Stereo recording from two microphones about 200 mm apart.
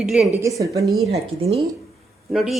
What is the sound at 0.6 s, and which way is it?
Speech, 15° right (ahead or behind).